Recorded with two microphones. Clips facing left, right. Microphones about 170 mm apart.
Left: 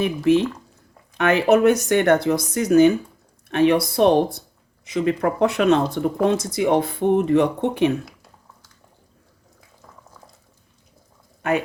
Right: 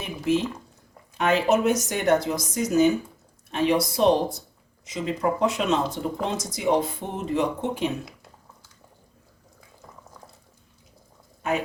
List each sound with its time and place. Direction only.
0.0 s speech: 65° left (ahead or behind)